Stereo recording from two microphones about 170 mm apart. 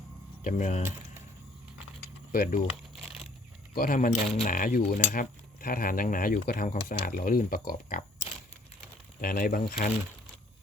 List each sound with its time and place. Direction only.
0.4 s speech: 45° left (ahead or behind)
2.0 s typing: 55° left (ahead or behind)
2.9 s a sound: centre (ahead or behind)
3.8 s cutlery: 50° left (ahead or behind)
9.2 s cutlery: 60° left (ahead or behind)